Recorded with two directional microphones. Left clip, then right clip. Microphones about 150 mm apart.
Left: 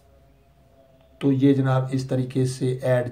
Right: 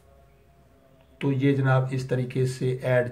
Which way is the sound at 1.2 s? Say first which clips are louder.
Left 4 dB; 50° left (ahead or behind).